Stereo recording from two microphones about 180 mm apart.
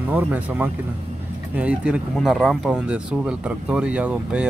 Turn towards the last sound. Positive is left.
turn(degrees=-5)  # may be behind; listen again after turning